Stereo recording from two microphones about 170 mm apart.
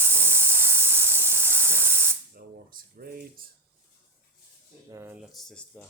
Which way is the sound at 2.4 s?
65° right (ahead or behind).